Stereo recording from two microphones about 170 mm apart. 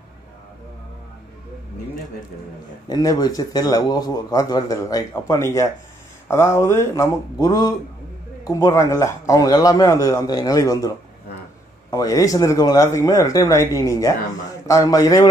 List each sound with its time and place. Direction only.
2.9 s a man's voice: 20° left (ahead or behind)
11.9 s a man's voice: 20° left (ahead or behind)